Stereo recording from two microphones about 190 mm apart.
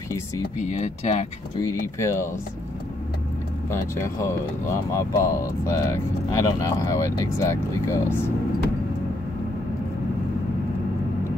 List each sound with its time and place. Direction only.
0.6 s speech: 40° left (ahead or behind)
1.6 s speech: 15° left (ahead or behind)
3.7 s speech: 15° left (ahead or behind)